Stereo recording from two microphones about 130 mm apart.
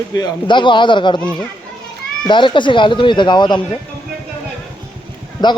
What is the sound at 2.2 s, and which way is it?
A man's voice, 40° left (ahead or behind).